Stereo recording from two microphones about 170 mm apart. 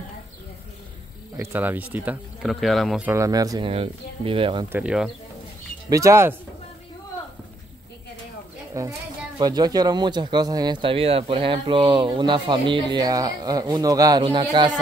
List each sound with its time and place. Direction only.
1.3 s speech: 15° right (ahead or behind)
2.5 s speech: centre (ahead or behind)
3.1 s speech: 20° right (ahead or behind)
3.7 s speech: 35° right (ahead or behind)
4.7 s speech: 5° right (ahead or behind)
5.9 s speech: 20° right (ahead or behind)
8.8 s speech: 20° right (ahead or behind)